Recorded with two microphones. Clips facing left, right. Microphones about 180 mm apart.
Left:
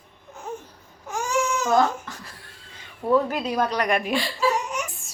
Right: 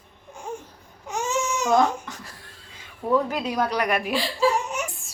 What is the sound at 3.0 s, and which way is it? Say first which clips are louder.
Speech: left 2 dB; 10° left (ahead or behind).